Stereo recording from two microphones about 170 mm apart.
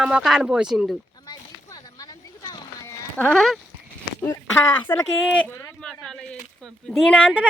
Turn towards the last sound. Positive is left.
turn(degrees=5)  # may be behind; listen again after turning